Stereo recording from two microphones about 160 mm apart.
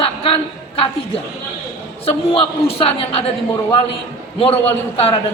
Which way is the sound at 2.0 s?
35° left (ahead or behind).